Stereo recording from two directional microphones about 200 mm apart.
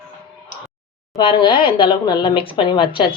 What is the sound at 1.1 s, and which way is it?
Speech, 20° left (ahead or behind).